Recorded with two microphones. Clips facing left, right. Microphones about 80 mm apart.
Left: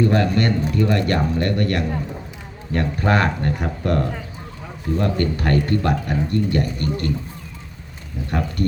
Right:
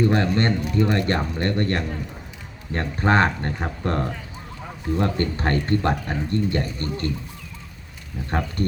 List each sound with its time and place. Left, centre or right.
0.0 s a man's voice: right
8.3 s speech: right